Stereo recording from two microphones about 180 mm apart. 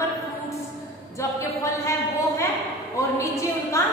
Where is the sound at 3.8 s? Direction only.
15° left (ahead or behind).